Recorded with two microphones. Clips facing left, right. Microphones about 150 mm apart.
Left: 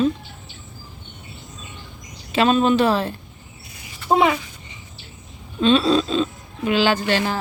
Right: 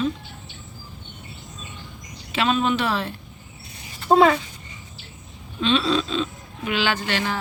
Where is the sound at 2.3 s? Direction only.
40° left (ahead or behind).